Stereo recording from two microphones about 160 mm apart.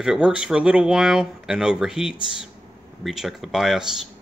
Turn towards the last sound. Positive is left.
turn(degrees=0)  # may be behind; listen again after turning